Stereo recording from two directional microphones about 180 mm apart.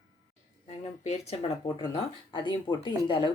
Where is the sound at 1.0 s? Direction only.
35° left (ahead or behind).